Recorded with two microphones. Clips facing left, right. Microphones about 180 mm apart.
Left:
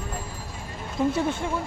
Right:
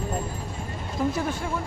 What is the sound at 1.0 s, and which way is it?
Speech, 20° left (ahead or behind).